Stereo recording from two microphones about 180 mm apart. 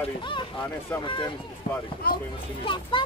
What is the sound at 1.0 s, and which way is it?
Speech, 25° left (ahead or behind).